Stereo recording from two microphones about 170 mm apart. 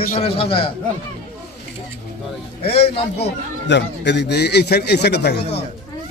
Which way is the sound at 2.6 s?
35° left (ahead or behind).